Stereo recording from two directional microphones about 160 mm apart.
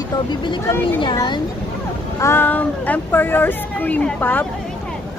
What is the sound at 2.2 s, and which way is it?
A woman's voice, 10° left (ahead or behind).